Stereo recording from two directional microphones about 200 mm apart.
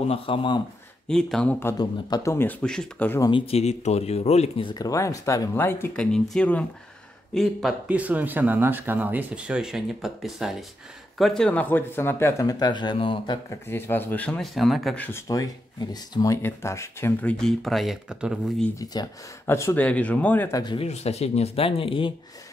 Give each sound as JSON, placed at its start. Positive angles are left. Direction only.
{"t": 0.1, "sound": "speech", "side_deg": 25}
{"t": 1.0, "sound": "speech", "side_deg": 5}
{"t": 3.3, "sound": "speech", "side_deg": 25}
{"t": 13.5, "sound": "speech", "side_deg": 10}
{"t": 15.0, "sound": "speech", "side_deg": 15}
{"t": 18.8, "sound": "speech", "side_deg": 15}